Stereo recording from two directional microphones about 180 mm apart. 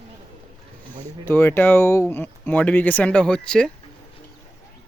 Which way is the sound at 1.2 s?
10° left (ahead or behind).